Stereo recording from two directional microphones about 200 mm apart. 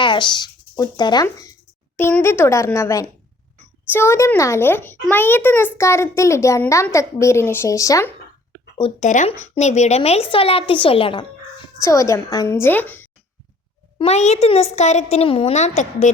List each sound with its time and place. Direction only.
0.0 s a child's voice: 25° left (ahead or behind)
8.8 s a child's voice: 35° left (ahead or behind); by 13.1 s 10° left (ahead or behind)
14.0 s speech: 35° left (ahead or behind)